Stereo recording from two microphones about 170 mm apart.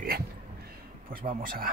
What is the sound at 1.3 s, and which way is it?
Speech, 55° right (ahead or behind).